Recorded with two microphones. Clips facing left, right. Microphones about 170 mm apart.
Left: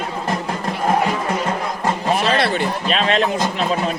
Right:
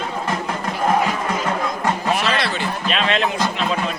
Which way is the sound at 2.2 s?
30° left (ahead or behind).